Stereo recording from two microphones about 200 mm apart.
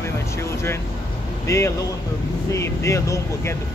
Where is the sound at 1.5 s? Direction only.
15° left (ahead or behind).